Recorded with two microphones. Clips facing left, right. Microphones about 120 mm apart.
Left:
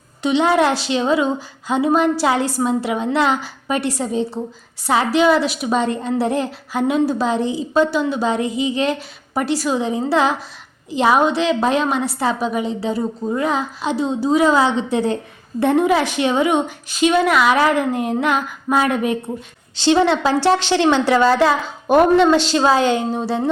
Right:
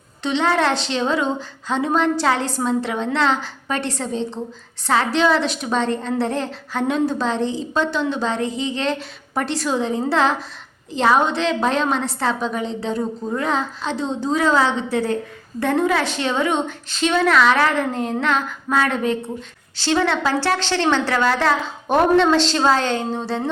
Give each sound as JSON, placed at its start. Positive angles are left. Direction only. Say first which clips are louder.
{"t": 0.2, "sound": "a woman's voice", "louder": "left 4 dB", "side_deg": 10}
{"t": 21.8, "sound": "a woman's voice", "louder": "left 3 dB", "side_deg": 5}